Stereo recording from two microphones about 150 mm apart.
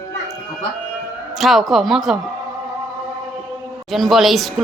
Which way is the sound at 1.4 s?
Centre (ahead or behind).